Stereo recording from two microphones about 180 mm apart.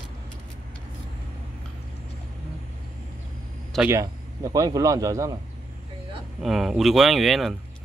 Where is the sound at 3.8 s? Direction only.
20° right (ahead or behind).